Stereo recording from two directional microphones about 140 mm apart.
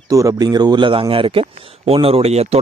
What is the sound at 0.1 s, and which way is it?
A man's voice, 25° right (ahead or behind).